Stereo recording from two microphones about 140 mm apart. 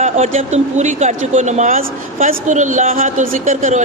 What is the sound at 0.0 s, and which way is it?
A man's voice, 50° right (ahead or behind).